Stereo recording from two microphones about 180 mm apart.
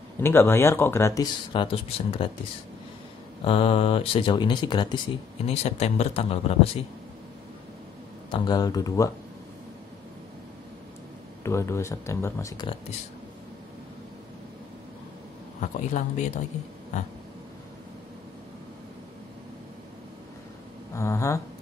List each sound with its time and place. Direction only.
0.2 s speech: 15° left (ahead or behind); by 2.2 s 30° left (ahead or behind)
3.4 s speech: 30° left (ahead or behind)
5.5 s speech: 35° left (ahead or behind)
8.3 s speech: 20° left (ahead or behind)
11.4 s speech: 15° left (ahead or behind)
15.6 s a man's voice: 40° left (ahead or behind)
20.9 s speech: 15° left (ahead or behind)